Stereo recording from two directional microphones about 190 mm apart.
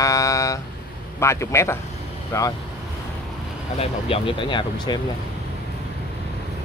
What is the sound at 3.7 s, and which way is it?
Speech, 30° left (ahead or behind).